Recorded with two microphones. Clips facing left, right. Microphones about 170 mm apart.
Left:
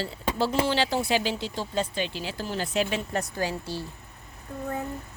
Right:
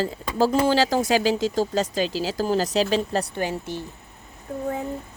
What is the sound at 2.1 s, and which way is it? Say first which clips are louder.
Speech: right 8 dB; 90° right.